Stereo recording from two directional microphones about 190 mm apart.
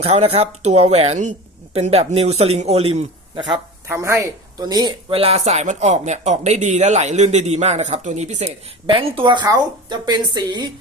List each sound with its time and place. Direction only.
0.0 s speech: 30° right (ahead or behind)
3.5 s speech: 15° right (ahead or behind)